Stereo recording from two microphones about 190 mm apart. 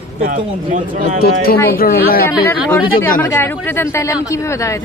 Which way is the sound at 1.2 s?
55° left (ahead or behind).